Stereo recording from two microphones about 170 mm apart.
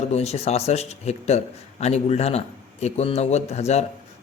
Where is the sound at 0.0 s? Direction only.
40° left (ahead or behind).